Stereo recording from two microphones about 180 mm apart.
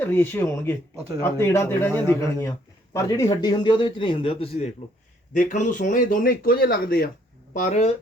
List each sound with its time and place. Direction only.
0.0 s a man's voice: 10° left (ahead or behind); by 4.7 s 30° left (ahead or behind)
5.3 s speech: 45° left (ahead or behind)
7.5 s speech: 40° left (ahead or behind)